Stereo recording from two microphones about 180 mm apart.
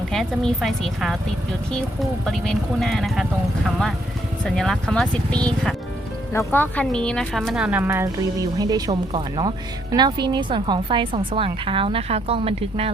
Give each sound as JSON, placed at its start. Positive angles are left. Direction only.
{"t": 0.1, "sound": "speech", "side_deg": 0}
{"t": 4.4, "sound": "a woman's voice", "side_deg": 5}